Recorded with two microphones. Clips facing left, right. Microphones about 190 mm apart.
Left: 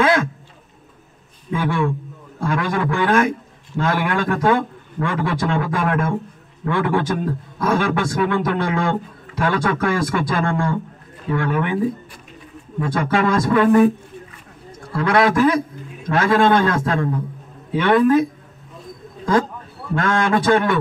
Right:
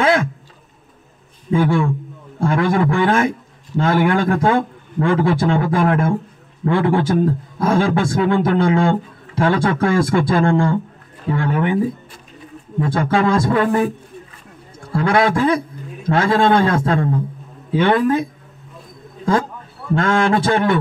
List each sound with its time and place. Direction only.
1.5 s a man's voice: 30° right (ahead or behind)
14.9 s a man's voice: 30° right (ahead or behind)
20.0 s a man's voice: 25° right (ahead or behind)